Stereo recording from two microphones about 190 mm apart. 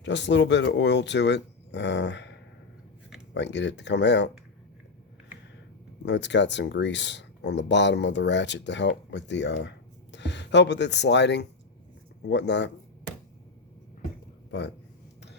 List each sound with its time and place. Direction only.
0.0 s speech: 70° left (ahead or behind)
6.1 s speech: 65° left (ahead or behind)